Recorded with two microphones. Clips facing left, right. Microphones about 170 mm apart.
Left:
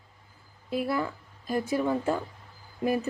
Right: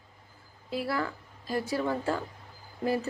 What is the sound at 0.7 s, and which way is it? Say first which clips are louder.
A woman's voice: left 3 dB; 20° left (ahead or behind).